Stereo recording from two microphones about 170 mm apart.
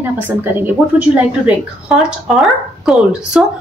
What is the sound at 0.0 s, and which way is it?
A woman's voice, 10° right (ahead or behind).